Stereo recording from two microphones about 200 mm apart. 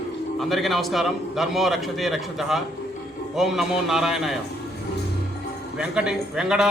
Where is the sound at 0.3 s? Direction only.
Centre (ahead or behind).